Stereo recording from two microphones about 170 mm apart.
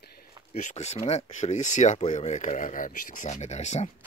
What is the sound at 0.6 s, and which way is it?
Speech, 45° left (ahead or behind).